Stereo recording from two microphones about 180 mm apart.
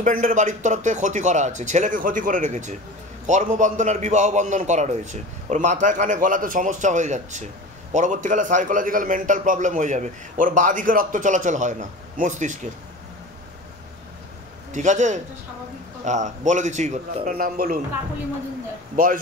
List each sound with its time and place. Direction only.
0.0 s a man's voice: 45° right (ahead or behind)
14.7 s a man's voice: 40° right (ahead or behind)